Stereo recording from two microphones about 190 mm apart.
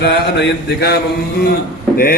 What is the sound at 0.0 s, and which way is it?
Speech, 60° left (ahead or behind).